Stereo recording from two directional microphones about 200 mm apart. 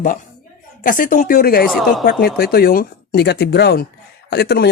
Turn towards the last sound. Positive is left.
turn(degrees=55)  # may be behind; listen again after turning